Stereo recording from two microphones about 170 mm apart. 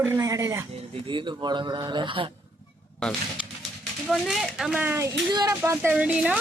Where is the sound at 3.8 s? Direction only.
Centre (ahead or behind).